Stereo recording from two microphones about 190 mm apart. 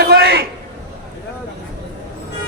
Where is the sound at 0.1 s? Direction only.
55° right (ahead or behind).